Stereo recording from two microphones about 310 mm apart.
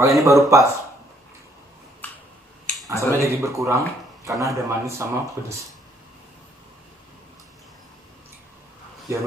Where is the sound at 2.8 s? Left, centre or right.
Centre.